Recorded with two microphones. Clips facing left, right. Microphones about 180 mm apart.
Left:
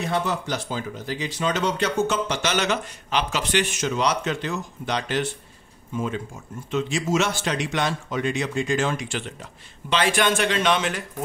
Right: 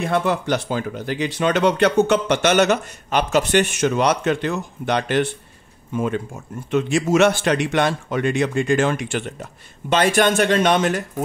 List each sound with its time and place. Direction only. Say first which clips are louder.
0.0 s speech: right 5 dB; 55° right (ahead or behind)